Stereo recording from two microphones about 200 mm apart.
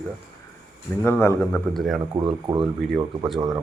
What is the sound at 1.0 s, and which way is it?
Speech, 10° left (ahead or behind).